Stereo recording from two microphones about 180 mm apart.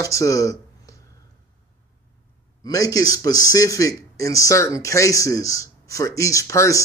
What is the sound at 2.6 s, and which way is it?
Speech, 20° left (ahead or behind).